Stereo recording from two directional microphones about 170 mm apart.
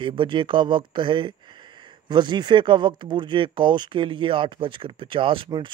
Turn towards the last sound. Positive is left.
turn(degrees=-30)  # may be behind; listen again after turning